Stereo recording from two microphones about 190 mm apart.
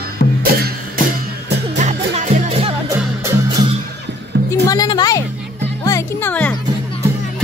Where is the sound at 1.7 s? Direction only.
40° right (ahead or behind).